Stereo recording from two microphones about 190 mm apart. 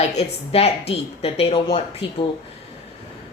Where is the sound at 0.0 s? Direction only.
35° left (ahead or behind).